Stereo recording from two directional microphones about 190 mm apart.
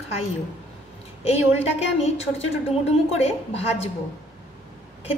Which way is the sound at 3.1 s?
30° left (ahead or behind).